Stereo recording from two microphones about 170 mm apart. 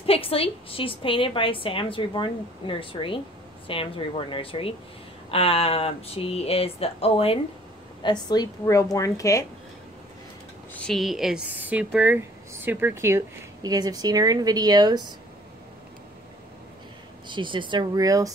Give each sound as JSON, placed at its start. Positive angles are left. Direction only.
{"t": 0.0, "sound": "a woman's voice", "side_deg": 35}
{"t": 8.0, "sound": "a woman's voice", "side_deg": 25}
{"t": 10.7, "sound": "speech", "side_deg": 5}
{"t": 17.3, "sound": "speech", "side_deg": -30}